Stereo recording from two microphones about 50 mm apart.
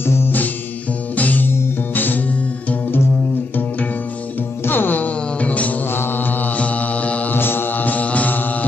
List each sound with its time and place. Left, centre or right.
0.0 s music: left
1.1 s music: left
4.6 s music: left
5.9 s mantra: left
6.5 s mantra: left
7.3 s mantra: left